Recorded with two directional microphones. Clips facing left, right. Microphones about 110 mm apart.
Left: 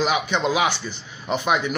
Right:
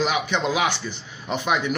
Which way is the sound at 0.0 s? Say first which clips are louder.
Left 1 dB; 15° left (ahead or behind).